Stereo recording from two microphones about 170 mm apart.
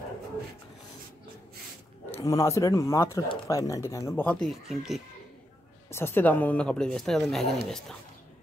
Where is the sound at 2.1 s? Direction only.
20° left (ahead or behind); by 5.0 s centre (ahead or behind).